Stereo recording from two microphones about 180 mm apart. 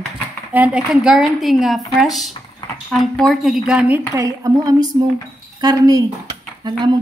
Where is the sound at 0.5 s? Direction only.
5° right (ahead or behind).